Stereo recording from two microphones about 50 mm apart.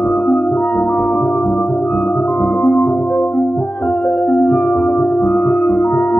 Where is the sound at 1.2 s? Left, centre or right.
Centre.